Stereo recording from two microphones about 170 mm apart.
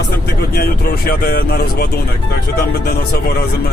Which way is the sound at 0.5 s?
60° left (ahead or behind).